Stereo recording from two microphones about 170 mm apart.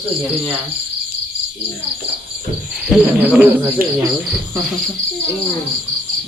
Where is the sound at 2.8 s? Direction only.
Centre (ahead or behind).